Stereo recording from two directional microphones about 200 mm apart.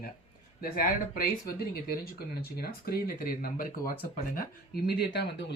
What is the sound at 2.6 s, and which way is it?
Speech, 50° left (ahead or behind).